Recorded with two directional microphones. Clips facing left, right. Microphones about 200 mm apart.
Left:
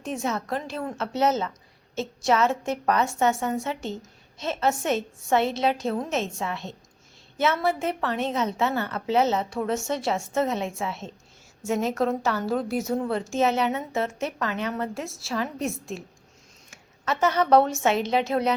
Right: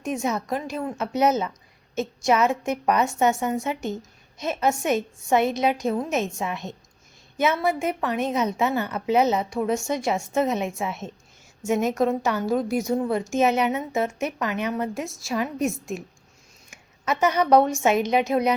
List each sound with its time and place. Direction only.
0.0 s a woman's voice: 15° right (ahead or behind)
16.6 s a sound: 15° right (ahead or behind)
17.8 s a woman's voice: 15° right (ahead or behind)